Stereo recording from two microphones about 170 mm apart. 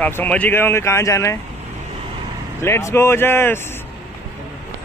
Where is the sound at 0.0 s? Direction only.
10° left (ahead or behind).